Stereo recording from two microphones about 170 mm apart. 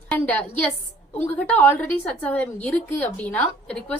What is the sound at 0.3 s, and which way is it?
A woman's voice, 10° left (ahead or behind).